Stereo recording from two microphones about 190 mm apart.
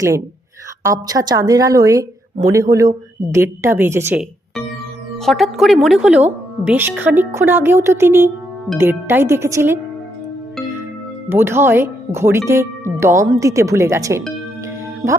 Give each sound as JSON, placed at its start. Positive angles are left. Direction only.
{"t": 0.8, "sound": "speech", "side_deg": -15}
{"t": 5.1, "sound": "speech", "side_deg": 0}
{"t": 11.3, "sound": "speech", "side_deg": -10}